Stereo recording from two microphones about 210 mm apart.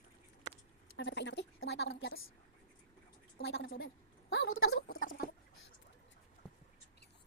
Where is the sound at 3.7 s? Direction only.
70° left (ahead or behind).